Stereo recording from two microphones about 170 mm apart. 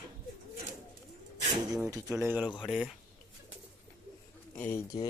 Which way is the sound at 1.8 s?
20° right (ahead or behind).